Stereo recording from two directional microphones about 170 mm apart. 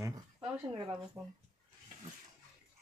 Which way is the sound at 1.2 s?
Centre (ahead or behind).